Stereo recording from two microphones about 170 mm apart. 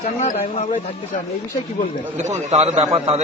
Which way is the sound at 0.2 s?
45° left (ahead or behind).